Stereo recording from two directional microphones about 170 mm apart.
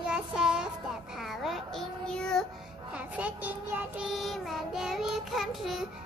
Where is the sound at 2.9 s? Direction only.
5° right (ahead or behind).